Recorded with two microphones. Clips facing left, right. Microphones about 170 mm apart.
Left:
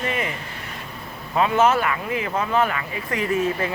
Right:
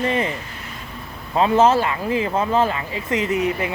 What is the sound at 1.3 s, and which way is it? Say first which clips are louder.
Speech: right 3 dB; 30° right (ahead or behind).